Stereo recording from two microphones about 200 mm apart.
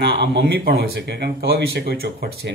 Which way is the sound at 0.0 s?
55° right (ahead or behind).